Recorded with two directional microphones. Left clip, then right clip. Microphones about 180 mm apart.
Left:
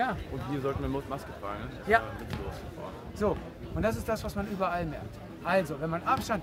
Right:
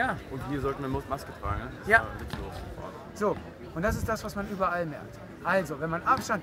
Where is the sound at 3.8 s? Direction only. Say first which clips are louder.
Right 1 dB; 10° right (ahead or behind).